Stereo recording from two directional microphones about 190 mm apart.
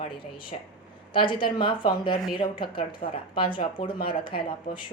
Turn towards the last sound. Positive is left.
turn(degrees=25)  # may be behind; listen again after turning